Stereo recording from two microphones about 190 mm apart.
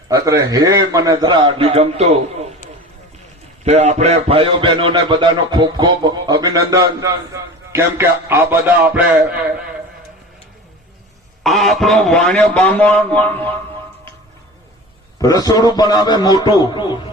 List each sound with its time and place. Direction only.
0.1 s a man's voice: 20° right (ahead or behind); by 2.5 s 35° right (ahead or behind)
3.6 s a man's voice: 35° right (ahead or behind); by 9.4 s 10° right (ahead or behind)
11.4 s a man's voice: centre (ahead or behind)
15.2 s a man's voice: 20° left (ahead or behind)